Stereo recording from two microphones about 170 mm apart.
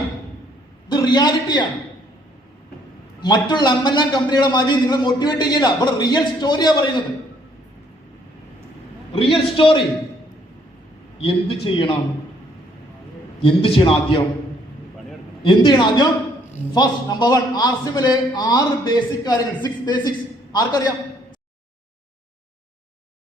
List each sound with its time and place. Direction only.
0.9 s a man's voice: 25° left (ahead or behind)
3.2 s a man's voice: 25° left (ahead or behind)
9.1 s a man's voice: 30° left (ahead or behind)
11.2 s a man's voice: 30° left (ahead or behind)
13.7 s a man's voice: 30° left (ahead or behind)
15.4 s a man's voice: 25° left (ahead or behind)